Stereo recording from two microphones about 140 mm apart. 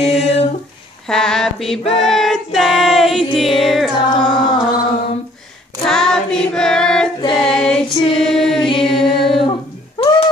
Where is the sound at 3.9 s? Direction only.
35° left (ahead or behind).